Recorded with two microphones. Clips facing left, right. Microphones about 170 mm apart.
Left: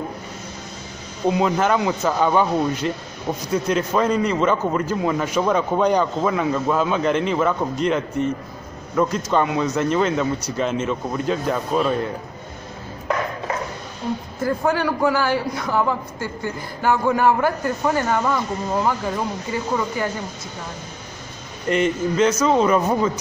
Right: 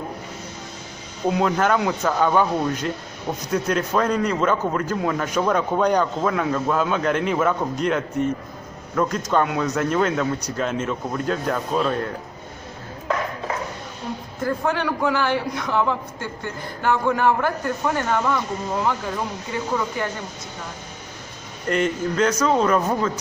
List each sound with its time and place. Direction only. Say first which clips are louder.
1.2 s a man's voice: left 1 dB; centre (ahead or behind)
14.4 s a man's voice: left 2 dB; 5° left (ahead or behind)
21.6 s a man's voice: left 2 dB; centre (ahead or behind)